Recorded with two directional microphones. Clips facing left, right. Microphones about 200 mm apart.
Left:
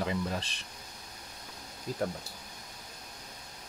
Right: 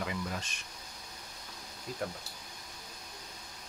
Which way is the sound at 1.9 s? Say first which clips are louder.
Left 5 dB; 35° left (ahead or behind).